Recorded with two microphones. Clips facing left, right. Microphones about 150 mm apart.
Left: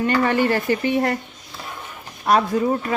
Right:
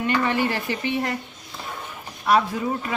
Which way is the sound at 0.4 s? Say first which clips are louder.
Left 6 dB; 50° left (ahead or behind).